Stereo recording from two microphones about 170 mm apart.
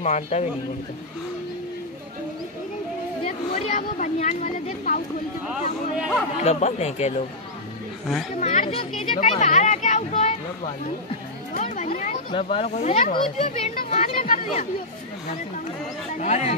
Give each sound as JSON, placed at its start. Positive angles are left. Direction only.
{"t": 0.0, "sound": "speech", "side_deg": 45}
{"t": 3.3, "sound": "speech", "side_deg": 45}
{"t": 5.5, "sound": "speech", "side_deg": -5}
{"t": 6.4, "sound": "speech", "side_deg": 40}
{"t": 8.4, "sound": "speech", "side_deg": 45}
{"t": 11.5, "sound": "a sound", "side_deg": 45}
{"t": 12.3, "sound": "speech", "side_deg": 30}
{"t": 16.2, "sound": "speech", "side_deg": 40}